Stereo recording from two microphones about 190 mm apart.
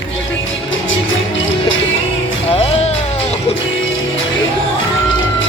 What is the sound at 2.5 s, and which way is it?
Music, 30° left (ahead or behind).